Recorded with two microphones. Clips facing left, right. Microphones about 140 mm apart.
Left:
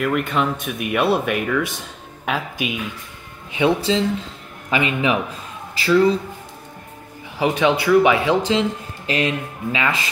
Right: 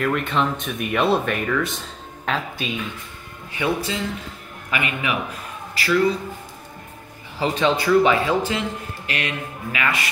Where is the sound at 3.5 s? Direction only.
25° left (ahead or behind).